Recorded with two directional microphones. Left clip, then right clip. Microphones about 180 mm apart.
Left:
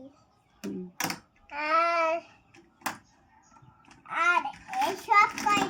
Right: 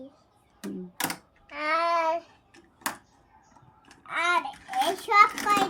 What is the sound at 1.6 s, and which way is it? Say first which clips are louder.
Child singing: even; 20° right (ahead or behind).